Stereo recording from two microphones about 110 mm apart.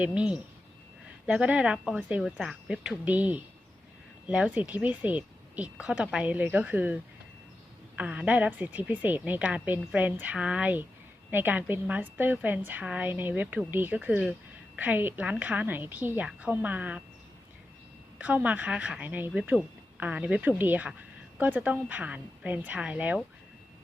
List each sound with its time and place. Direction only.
0.0 s speech: 10° right (ahead or behind)
18.2 s speech: 15° right (ahead or behind)